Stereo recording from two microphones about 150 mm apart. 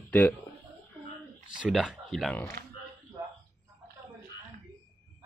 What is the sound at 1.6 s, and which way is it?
Speech, 5° right (ahead or behind).